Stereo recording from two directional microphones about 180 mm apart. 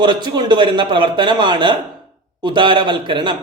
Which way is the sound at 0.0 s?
25° right (ahead or behind).